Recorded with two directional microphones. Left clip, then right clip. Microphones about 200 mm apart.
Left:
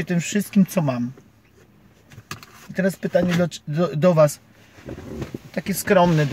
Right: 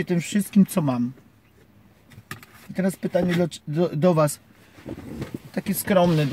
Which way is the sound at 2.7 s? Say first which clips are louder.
Left 3 dB; 10° right (ahead or behind).